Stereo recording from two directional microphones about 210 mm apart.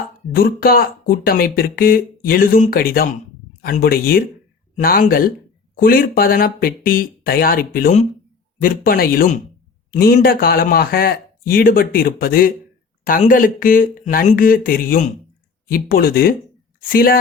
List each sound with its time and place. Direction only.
0.3 s speech: 45° left (ahead or behind)